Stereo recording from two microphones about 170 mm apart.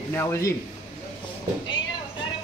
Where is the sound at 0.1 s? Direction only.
15° left (ahead or behind).